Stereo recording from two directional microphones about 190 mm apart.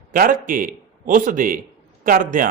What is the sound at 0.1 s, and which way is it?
Speech, 45° right (ahead or behind).